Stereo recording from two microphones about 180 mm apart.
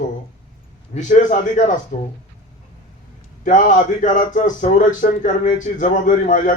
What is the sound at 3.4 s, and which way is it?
A man's voice, 45° left (ahead or behind).